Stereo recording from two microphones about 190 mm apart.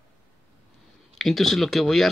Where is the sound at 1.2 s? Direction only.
Centre (ahead or behind).